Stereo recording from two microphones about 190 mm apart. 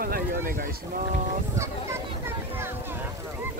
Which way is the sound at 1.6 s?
15° right (ahead or behind).